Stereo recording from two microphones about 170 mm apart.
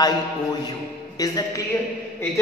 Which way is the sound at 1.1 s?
20° left (ahead or behind).